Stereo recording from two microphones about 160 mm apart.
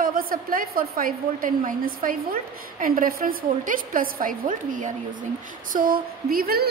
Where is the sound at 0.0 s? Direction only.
65° right (ahead or behind).